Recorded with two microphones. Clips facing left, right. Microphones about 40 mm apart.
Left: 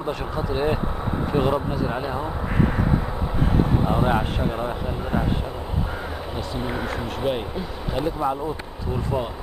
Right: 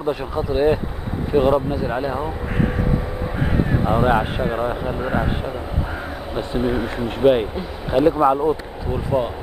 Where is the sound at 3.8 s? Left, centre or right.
Centre.